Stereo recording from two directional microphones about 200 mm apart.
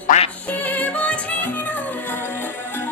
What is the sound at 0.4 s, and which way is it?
Music, 5° left (ahead or behind).